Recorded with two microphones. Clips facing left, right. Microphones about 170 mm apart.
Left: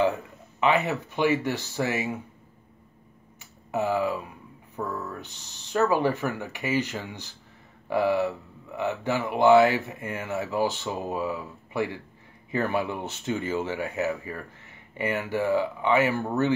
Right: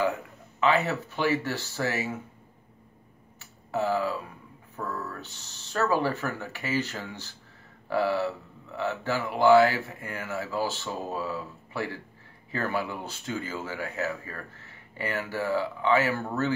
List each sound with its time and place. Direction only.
0.6 s speech: 20° left (ahead or behind)
3.3 s a sound: 15° left (ahead or behind)
4.7 s speech: 15° left (ahead or behind)